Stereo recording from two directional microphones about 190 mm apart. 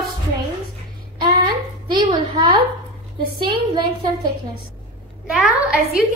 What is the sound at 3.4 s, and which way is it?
Speech, 25° right (ahead or behind).